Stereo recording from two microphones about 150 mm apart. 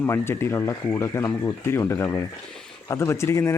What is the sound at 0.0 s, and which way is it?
Speech, 15° left (ahead or behind).